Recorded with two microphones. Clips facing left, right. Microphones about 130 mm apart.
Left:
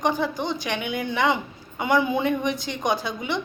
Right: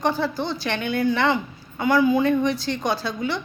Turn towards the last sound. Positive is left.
turn(degrees=20)  # may be behind; listen again after turning